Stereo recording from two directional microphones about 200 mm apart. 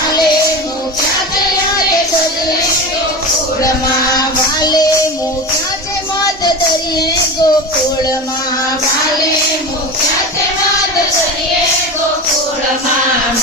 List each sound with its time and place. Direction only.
4.6 s child singing: 20° left (ahead or behind)
6.9 s child singing: 20° left (ahead or behind)